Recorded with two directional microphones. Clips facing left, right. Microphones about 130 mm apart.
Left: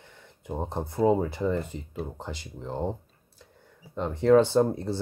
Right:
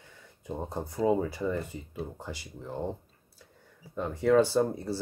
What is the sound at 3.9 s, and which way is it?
Speech, 20° left (ahead or behind).